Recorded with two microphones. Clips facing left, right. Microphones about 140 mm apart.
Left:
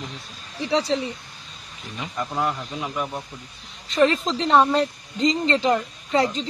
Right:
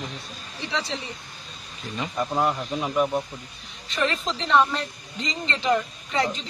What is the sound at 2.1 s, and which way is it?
Speech, 20° right (ahead or behind).